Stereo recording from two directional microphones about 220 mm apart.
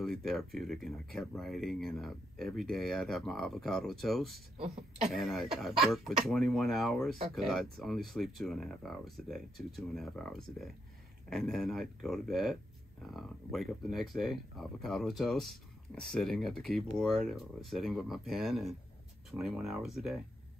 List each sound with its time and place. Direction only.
0.0 s speech: centre (ahead or behind)
4.6 s speech: 30° right (ahead or behind)
5.1 s speech: centre (ahead or behind)